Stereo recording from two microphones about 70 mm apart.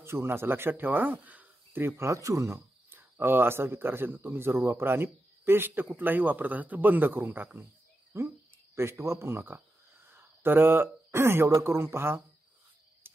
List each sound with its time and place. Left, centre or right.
0.0 s speech: right
2.0 s speech: right
13.0 s cricket: right